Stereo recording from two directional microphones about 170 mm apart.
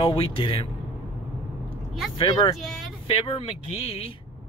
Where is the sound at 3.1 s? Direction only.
30° left (ahead or behind).